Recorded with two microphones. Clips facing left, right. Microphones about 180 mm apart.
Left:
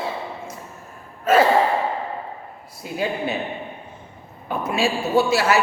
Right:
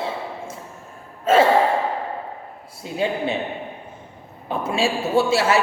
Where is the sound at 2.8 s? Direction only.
25° right (ahead or behind).